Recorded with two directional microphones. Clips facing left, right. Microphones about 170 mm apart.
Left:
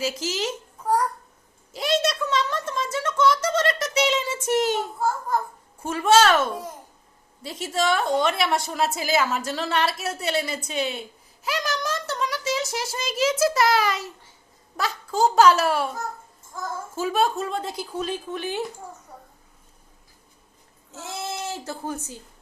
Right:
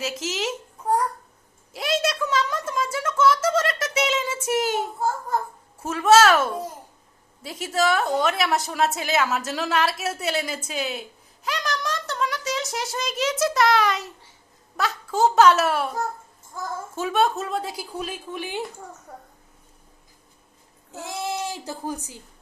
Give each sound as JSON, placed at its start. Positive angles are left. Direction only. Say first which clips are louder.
{"t": 0.0, "sound": "a woman's voice", "louder": "left 1 dB", "side_deg": 0}
{"t": 1.7, "sound": "a sound", "louder": "left 1 dB", "side_deg": 0}
{"t": 5.8, "sound": "a woman's voice", "louder": "right 2 dB", "side_deg": 0}
{"t": 16.9, "sound": "a woman's voice", "louder": "right 1 dB", "side_deg": 0}
{"t": 20.9, "sound": "speech", "louder": "right 3 dB", "side_deg": -15}